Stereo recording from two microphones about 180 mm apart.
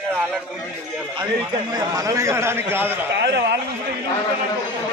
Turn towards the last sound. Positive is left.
turn(degrees=-70)  # may be behind; listen again after turning